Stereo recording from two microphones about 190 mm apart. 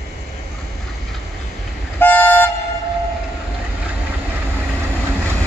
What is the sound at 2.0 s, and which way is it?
Toot, 10° left (ahead or behind).